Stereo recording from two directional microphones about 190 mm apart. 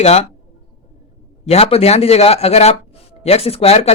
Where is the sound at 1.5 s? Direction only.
30° left (ahead or behind).